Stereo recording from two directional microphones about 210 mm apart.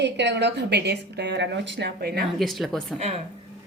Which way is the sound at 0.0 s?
55° right (ahead or behind).